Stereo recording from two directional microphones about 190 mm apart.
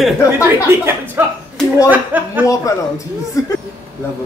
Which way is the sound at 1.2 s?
10° right (ahead or behind).